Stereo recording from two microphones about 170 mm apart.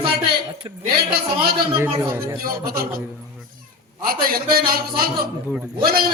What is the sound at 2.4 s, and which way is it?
Speech, 60° right (ahead or behind).